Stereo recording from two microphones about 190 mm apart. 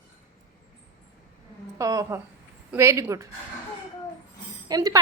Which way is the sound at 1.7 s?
15° right (ahead or behind).